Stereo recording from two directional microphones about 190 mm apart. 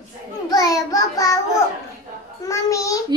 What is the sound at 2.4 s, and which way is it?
Speech, 15° left (ahead or behind).